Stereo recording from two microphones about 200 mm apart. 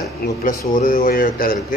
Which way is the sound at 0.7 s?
45° left (ahead or behind).